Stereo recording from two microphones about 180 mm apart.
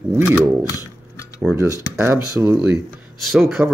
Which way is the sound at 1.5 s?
15° right (ahead or behind).